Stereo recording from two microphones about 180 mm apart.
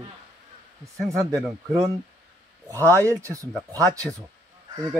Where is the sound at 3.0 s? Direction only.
15° right (ahead or behind).